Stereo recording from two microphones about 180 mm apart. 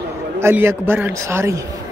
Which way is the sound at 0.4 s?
15° right (ahead or behind).